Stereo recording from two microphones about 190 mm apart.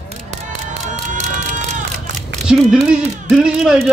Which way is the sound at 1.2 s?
35° right (ahead or behind).